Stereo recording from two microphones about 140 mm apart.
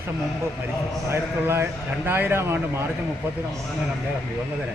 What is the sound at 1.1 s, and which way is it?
Speech, 15° right (ahead or behind).